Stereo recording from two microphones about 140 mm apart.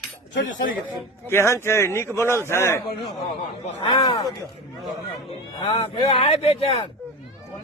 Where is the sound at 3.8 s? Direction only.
30° left (ahead or behind).